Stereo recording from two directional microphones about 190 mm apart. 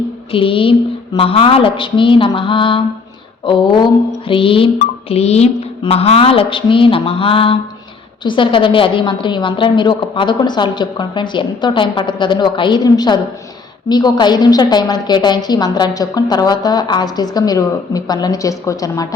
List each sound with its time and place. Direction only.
0.3 s a woman's voice: 30° left (ahead or behind)